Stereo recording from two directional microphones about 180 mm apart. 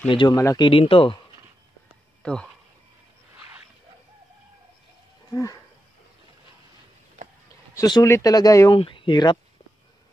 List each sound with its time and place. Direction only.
0.1 s speech: 25° left (ahead or behind)
0.7 s speech: 30° left (ahead or behind)
2.2 s speech: 5° left (ahead or behind)
5.3 s livestock: 20° left (ahead or behind)
7.7 s speech: 20° left (ahead or behind)